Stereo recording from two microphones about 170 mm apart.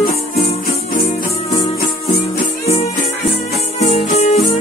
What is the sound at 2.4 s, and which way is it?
Music, 40° left (ahead or behind).